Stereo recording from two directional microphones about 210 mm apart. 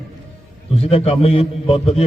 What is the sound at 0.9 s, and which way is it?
A man's voice, 30° left (ahead or behind).